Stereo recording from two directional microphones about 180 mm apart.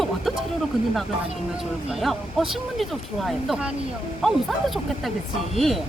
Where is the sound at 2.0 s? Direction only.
Centre (ahead or behind).